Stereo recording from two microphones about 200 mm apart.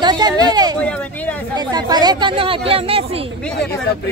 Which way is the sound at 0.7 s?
5° left (ahead or behind).